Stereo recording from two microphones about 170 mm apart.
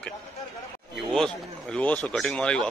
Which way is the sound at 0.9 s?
Centre (ahead or behind).